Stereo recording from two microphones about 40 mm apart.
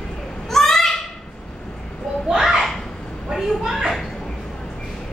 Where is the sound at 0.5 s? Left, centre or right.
Centre.